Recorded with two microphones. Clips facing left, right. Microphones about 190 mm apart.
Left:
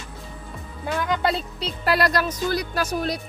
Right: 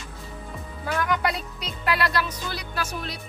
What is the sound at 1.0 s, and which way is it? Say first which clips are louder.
Music: left 3 dB; 25° left (ahead or behind).